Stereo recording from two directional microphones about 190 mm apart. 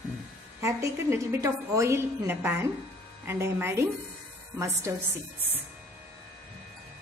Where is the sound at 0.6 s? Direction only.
15° right (ahead or behind).